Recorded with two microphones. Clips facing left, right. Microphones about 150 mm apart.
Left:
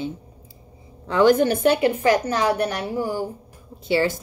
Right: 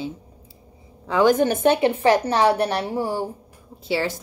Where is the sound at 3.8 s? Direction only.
Centre (ahead or behind).